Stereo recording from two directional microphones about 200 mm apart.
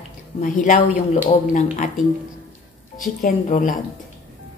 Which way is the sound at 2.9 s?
40° left (ahead or behind).